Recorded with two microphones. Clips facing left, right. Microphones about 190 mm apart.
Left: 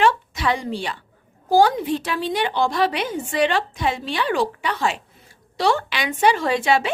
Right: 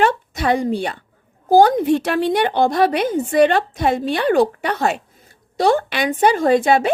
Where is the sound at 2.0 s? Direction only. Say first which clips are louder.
Right 6 dB; 60° right (ahead or behind).